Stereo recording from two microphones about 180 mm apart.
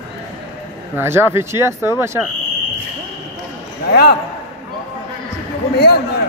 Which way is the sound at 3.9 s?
60° left (ahead or behind).